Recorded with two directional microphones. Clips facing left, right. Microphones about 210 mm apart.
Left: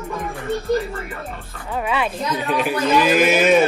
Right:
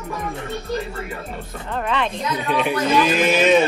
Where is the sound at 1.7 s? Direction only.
5° left (ahead or behind).